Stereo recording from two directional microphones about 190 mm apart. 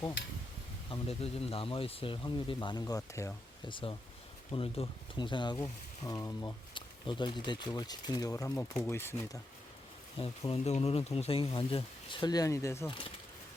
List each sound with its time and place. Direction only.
0.9 s speech: 30° left (ahead or behind); by 3.7 s 15° left (ahead or behind)
3.7 s speech: 25° left (ahead or behind)
10.2 s speech: 30° left (ahead or behind); by 12.9 s 15° left (ahead or behind)
12.9 s speech: 25° left (ahead or behind)